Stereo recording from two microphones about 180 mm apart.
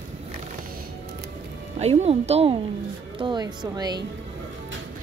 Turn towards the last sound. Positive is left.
turn(degrees=-25)  # may be behind; listen again after turning